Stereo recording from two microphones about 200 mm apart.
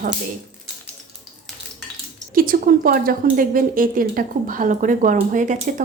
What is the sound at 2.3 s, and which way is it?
Speech, 45° right (ahead or behind).